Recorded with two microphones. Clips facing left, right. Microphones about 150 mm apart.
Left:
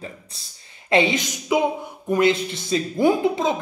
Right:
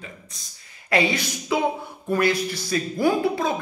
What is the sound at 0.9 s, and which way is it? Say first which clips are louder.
Speech: left 3 dB; 20° left (ahead or behind).